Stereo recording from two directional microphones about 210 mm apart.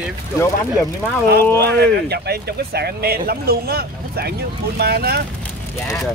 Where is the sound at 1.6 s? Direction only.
50° right (ahead or behind).